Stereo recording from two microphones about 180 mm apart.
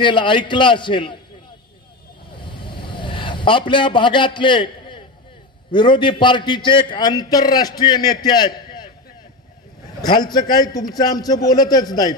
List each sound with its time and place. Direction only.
0.0 s a man's voice: 25° left (ahead or behind)
2.3 s vehicle: 25° left (ahead or behind)
5.7 s a man's voice: 25° left (ahead or behind)
10.0 s a man's voice: 25° left (ahead or behind)